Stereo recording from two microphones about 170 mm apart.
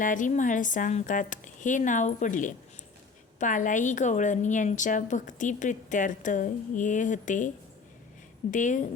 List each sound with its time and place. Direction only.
0.0 s a woman's voice: 50° left (ahead or behind)